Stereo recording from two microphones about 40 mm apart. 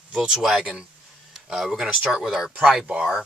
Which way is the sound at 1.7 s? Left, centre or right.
Centre.